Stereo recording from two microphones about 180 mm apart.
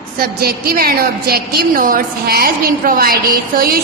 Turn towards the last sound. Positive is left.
turn(degrees=-55)  # may be behind; listen again after turning